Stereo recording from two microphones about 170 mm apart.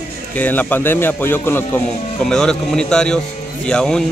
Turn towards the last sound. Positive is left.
turn(degrees=5)  # may be behind; listen again after turning